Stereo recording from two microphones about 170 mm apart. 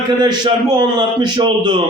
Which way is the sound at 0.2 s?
25° right (ahead or behind).